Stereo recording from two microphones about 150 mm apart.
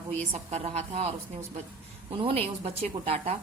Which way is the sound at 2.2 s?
40° right (ahead or behind).